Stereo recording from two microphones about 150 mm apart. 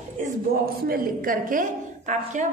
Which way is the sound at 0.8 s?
70° right (ahead or behind).